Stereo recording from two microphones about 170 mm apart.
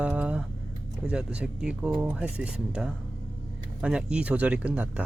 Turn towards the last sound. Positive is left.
turn(degrees=-10)  # may be behind; listen again after turning